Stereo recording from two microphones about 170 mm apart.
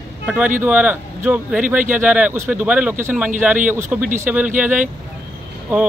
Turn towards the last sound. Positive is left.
turn(degrees=-10)  # may be behind; listen again after turning